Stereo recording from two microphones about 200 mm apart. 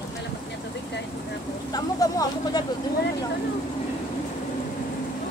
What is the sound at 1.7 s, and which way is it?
Speech, 20° left (ahead or behind).